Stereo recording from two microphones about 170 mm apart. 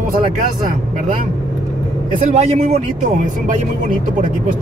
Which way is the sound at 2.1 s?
40° right (ahead or behind).